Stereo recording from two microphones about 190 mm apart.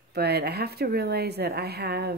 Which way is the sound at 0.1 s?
55° right (ahead or behind).